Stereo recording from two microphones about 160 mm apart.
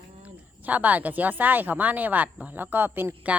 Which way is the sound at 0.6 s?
10° right (ahead or behind).